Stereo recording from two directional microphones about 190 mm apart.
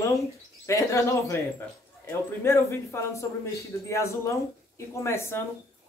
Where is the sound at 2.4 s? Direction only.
15° left (ahead or behind).